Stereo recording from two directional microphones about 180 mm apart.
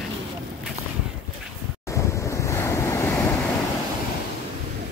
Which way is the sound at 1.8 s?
15° left (ahead or behind).